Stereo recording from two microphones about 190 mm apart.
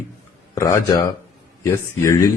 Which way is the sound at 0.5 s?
15° left (ahead or behind).